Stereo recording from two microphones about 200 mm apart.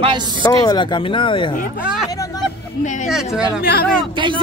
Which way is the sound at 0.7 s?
20° left (ahead or behind).